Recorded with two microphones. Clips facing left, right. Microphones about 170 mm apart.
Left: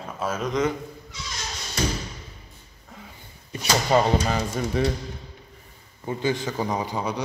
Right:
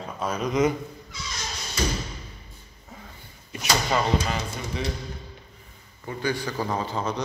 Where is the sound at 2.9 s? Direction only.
Centre (ahead or behind).